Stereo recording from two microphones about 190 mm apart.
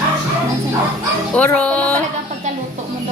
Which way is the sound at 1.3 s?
5° left (ahead or behind).